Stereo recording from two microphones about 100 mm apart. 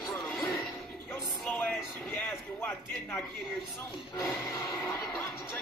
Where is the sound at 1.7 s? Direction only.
Centre (ahead or behind).